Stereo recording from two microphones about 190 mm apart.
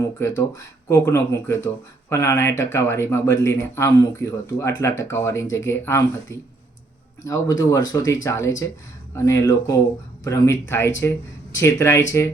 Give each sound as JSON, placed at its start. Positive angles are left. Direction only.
{"t": 0.0, "sound": "speech", "side_deg": 15}